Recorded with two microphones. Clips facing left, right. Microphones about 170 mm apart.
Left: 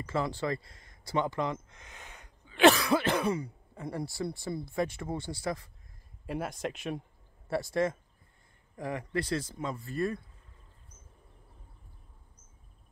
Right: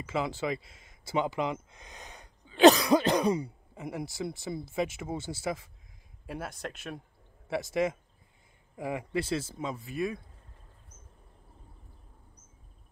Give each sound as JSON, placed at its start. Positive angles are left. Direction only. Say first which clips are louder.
{"t": 0.0, "sound": "speech", "louder": "even", "side_deg": 0}